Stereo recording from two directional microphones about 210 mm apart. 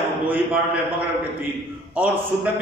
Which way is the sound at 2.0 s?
10° right (ahead or behind).